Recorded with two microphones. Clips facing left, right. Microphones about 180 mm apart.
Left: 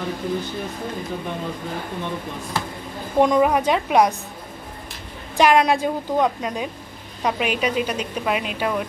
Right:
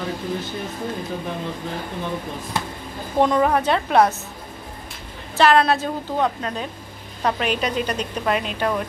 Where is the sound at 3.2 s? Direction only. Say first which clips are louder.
Left 1 dB; 10° left (ahead or behind).